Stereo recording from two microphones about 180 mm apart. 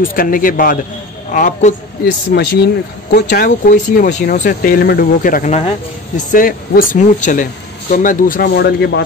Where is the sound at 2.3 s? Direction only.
65° left (ahead or behind).